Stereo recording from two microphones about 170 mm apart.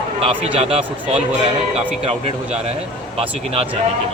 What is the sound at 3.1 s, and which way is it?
Speech, 35° right (ahead or behind).